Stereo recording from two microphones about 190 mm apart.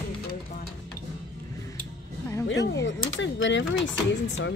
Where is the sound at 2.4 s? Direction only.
65° left (ahead or behind).